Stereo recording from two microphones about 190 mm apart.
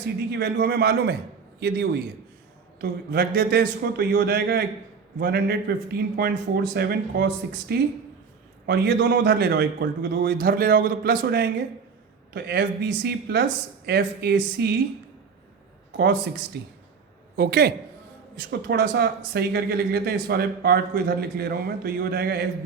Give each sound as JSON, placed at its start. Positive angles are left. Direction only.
{"t": 0.3, "sound": "speech", "side_deg": -55}
{"t": 15.9, "sound": "speech", "side_deg": -65}